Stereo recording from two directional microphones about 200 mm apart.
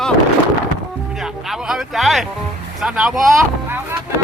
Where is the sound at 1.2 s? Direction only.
Centre (ahead or behind).